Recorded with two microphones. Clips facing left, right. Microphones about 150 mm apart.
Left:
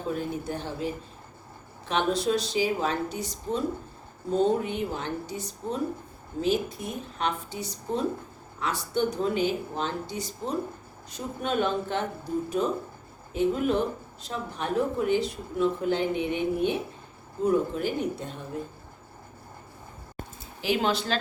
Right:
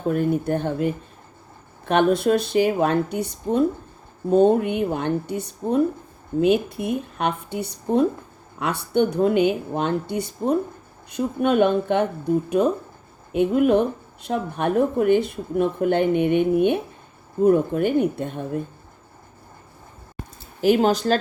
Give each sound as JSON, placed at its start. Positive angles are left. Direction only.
{"t": 0.1, "sound": "speech", "side_deg": -55}
{"t": 20.6, "sound": "speech", "side_deg": -45}